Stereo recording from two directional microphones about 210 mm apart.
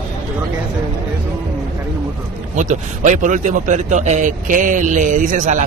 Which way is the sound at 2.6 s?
35° right (ahead or behind).